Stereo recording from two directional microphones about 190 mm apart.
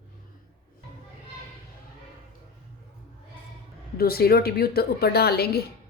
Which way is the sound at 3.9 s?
55° left (ahead or behind).